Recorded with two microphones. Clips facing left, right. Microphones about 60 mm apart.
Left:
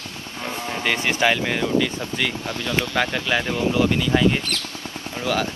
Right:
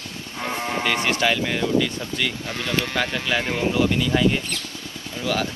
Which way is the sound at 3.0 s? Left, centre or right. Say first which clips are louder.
Left 4 dB; left.